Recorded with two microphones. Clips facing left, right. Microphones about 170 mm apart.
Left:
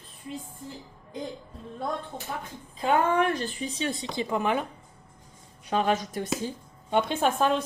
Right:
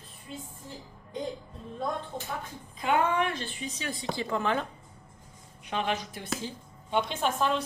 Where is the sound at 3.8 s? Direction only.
25° left (ahead or behind).